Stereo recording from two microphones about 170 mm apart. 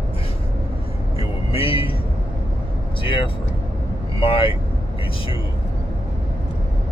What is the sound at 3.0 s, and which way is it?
Speech, 30° left (ahead or behind).